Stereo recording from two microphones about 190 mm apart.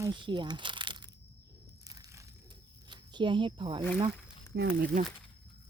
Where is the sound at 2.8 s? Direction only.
25° right (ahead or behind).